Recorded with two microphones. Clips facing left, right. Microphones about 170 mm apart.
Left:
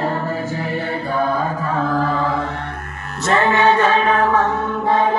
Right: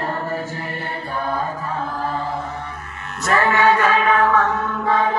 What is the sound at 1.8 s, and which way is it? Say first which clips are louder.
Chant: left 7 dB; 90° left.